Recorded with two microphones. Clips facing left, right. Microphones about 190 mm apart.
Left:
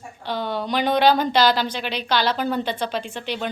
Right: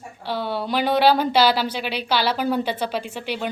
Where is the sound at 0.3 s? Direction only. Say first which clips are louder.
Even; 5° right (ahead or behind).